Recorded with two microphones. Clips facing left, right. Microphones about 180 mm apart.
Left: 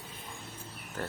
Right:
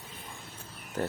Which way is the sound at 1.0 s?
20° right (ahead or behind).